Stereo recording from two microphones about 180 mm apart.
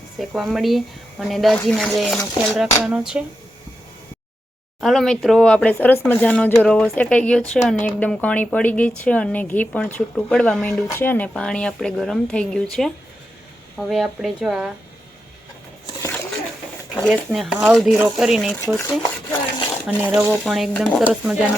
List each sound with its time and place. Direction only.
0.2 s speech: centre (ahead or behind)
4.8 s speech: centre (ahead or behind)
13.7 s speech: centre (ahead or behind)
16.0 s a sound: 15° left (ahead or behind)
16.9 s speech: centre (ahead or behind)
18.8 s dishes: 15° left (ahead or behind)
19.9 s speech: 5° right (ahead or behind)